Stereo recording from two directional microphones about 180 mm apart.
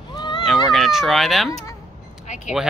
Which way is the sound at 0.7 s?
Centre (ahead or behind).